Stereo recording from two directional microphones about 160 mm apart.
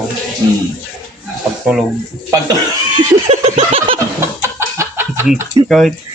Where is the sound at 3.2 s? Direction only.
40° right (ahead or behind).